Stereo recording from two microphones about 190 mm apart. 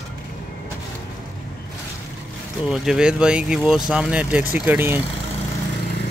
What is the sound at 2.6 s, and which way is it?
Speech, 5° right (ahead or behind).